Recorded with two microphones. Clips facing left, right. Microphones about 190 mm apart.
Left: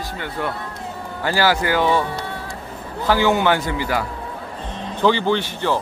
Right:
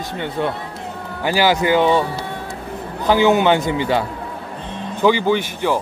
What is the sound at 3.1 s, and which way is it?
Speech, 20° right (ahead or behind).